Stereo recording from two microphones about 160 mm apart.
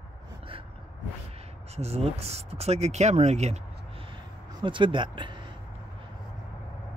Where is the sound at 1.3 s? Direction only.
40° right (ahead or behind).